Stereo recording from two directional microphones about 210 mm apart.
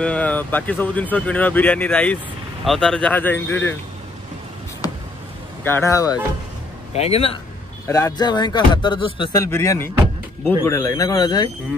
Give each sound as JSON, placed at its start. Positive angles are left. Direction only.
{"t": 0.0, "sound": "speech", "side_deg": 5}
{"t": 5.6, "sound": "speech", "side_deg": 10}
{"t": 6.9, "sound": "a man's voice", "side_deg": 30}
{"t": 7.9, "sound": "speech", "side_deg": 20}